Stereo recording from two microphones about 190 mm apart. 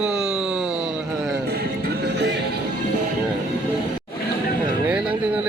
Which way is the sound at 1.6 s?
60° right (ahead or behind).